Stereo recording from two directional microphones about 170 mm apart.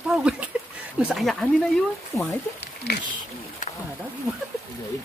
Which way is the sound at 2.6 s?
80° left.